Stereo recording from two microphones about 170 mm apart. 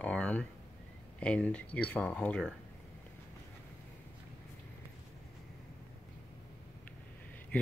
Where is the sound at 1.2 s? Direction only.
5° left (ahead or behind).